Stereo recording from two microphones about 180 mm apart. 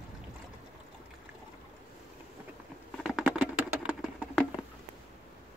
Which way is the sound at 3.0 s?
5° right (ahead or behind).